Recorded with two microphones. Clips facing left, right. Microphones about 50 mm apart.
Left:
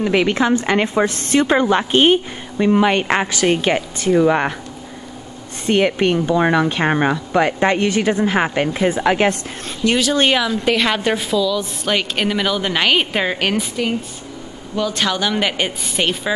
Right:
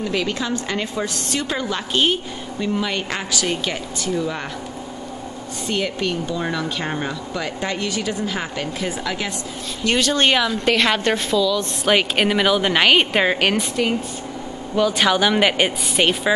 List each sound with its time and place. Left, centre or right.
0.0 s a woman's voice: left
5.7 s a woman's voice: left
9.8 s a woman's voice: centre